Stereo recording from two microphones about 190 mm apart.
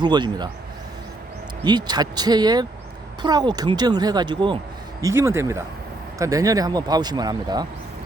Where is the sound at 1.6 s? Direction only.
20° right (ahead or behind).